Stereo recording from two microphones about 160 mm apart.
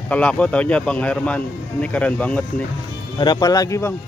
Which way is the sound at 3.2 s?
25° left (ahead or behind).